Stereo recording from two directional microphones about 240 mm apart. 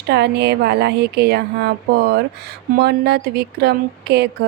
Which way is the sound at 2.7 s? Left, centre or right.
Right.